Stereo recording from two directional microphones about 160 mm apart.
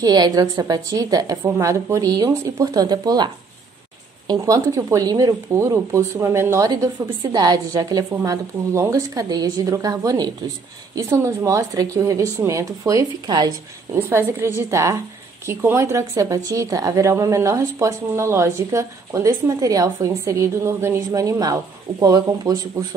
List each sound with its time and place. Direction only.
0.0 s speech: 25° right (ahead or behind)
4.3 s a woman's voice: 25° right (ahead or behind)